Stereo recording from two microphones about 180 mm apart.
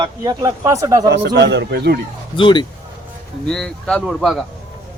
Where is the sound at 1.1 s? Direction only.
75° right (ahead or behind).